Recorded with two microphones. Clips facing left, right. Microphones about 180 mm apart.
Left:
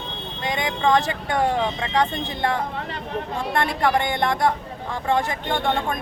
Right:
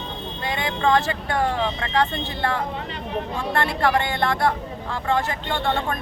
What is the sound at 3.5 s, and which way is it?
Speech, 15° left (ahead or behind).